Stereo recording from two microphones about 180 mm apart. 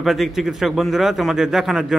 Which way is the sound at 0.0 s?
Centre (ahead or behind).